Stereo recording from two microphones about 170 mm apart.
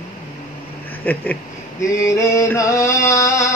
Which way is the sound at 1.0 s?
10° left (ahead or behind).